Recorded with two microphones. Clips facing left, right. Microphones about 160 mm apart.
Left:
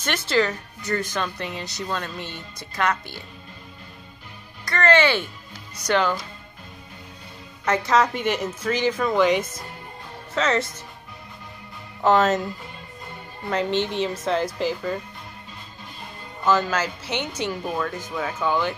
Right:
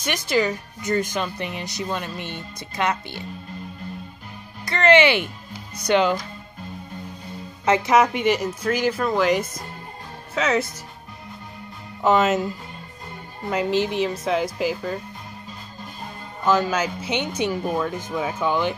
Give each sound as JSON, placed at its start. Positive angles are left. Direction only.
{"t": 0.0, "sound": "speech", "side_deg": -15}
{"t": 4.6, "sound": "speech", "side_deg": -20}
{"t": 7.6, "sound": "speech", "side_deg": -20}
{"t": 12.0, "sound": "speech", "side_deg": -5}
{"t": 13.5, "sound": "speech", "side_deg": -5}
{"t": 16.4, "sound": "speech", "side_deg": -15}